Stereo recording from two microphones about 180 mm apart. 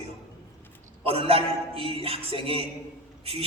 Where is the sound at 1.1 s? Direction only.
30° right (ahead or behind).